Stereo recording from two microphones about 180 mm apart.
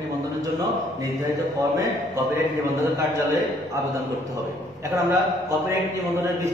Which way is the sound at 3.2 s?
15° right (ahead or behind).